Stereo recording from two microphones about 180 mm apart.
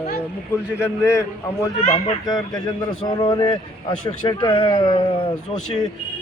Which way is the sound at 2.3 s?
20° left (ahead or behind).